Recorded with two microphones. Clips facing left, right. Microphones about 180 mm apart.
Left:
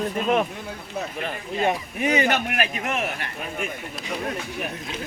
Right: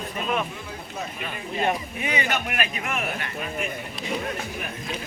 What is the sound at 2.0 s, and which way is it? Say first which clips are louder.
Speech: left 9 dB; 45° left (ahead or behind).